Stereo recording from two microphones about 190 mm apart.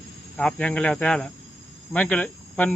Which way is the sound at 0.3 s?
5° left (ahead or behind).